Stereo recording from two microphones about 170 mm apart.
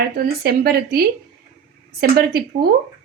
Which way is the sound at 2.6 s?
60° right (ahead or behind).